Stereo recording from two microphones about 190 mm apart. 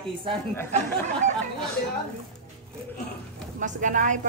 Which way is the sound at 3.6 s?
40° right (ahead or behind).